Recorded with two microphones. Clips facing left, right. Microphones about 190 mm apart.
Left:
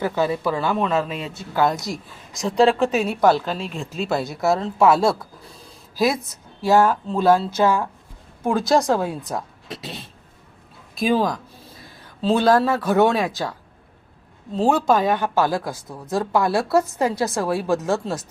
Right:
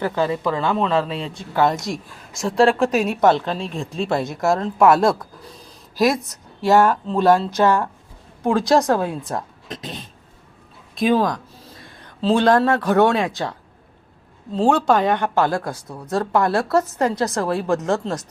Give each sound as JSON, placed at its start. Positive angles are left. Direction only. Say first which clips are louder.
{"t": 0.0, "sound": "a woman's voice", "louder": "even", "side_deg": 10}
{"t": 0.9, "sound": "a man's voice", "louder": "right 2 dB", "side_deg": -30}
{"t": 1.3, "sound": "a woman's voice", "louder": "right 1 dB", "side_deg": 5}
{"t": 6.7, "sound": "a woman's voice", "louder": "right 1 dB", "side_deg": 0}
{"t": 9.0, "sound": "a woman's voice", "louder": "right 1 dB", "side_deg": 10}
{"t": 14.5, "sound": "a woman's voice", "louder": "right 1 dB", "side_deg": 5}